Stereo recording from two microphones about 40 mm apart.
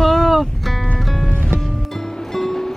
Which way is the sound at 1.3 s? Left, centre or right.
Right.